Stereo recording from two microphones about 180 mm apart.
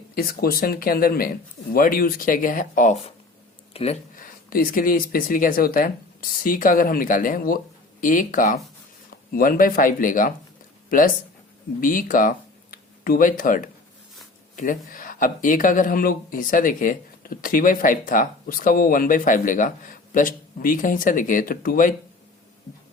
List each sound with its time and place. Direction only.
0.2 s speech: 55° left (ahead or behind)
3.7 s a sound: 35° left (ahead or behind)
4.1 s speech: 55° left (ahead or behind)